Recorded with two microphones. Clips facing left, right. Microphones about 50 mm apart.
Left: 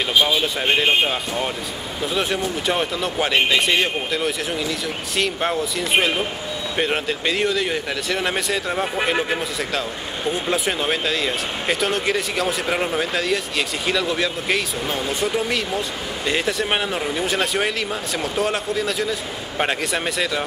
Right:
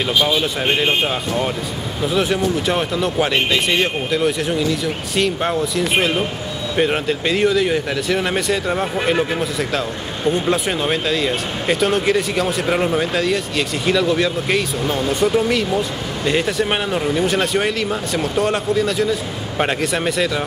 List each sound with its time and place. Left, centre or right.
0.2 s speech: centre